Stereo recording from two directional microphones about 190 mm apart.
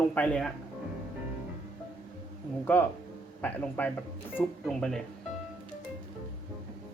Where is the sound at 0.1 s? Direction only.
5° left (ahead or behind).